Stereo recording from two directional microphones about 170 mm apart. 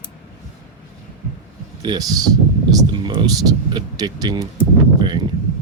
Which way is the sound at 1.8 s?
25° right (ahead or behind).